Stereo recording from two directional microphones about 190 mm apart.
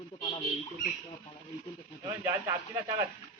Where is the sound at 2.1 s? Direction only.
15° right (ahead or behind).